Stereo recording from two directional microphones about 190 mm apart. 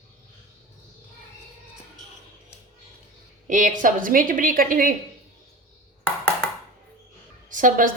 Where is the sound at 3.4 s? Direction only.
45° right (ahead or behind).